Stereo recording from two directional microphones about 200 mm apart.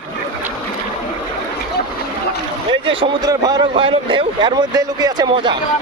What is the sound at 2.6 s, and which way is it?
Speech, 25° right (ahead or behind).